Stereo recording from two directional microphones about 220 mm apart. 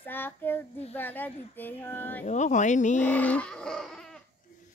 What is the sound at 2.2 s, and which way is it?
Speech, 35° left (ahead or behind).